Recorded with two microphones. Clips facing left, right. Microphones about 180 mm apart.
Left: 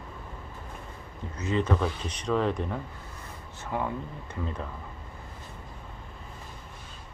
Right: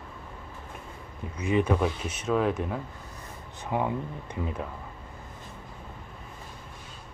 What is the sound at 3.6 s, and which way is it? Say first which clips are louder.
Speech: right 3 dB; 20° right (ahead or behind).